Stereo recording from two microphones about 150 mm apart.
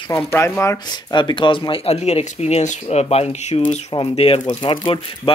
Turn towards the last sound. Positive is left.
turn(degrees=35)  # may be behind; listen again after turning